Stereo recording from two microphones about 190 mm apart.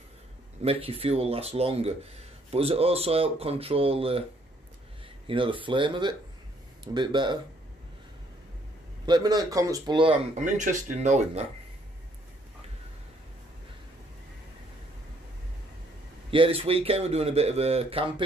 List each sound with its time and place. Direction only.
0.6 s speech: 30° right (ahead or behind)
5.2 s a man's voice: 25° right (ahead or behind)
9.0 s a man's voice: 20° right (ahead or behind)
10.4 s speech: 40° right (ahead or behind)
16.3 s speech: 30° right (ahead or behind)